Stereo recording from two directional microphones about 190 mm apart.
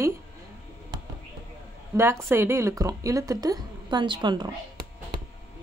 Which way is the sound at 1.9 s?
15° right (ahead or behind).